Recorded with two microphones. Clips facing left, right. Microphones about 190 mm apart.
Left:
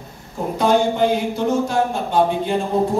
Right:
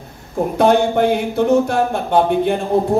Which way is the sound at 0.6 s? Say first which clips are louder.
Right 3 dB; 60° right (ahead or behind).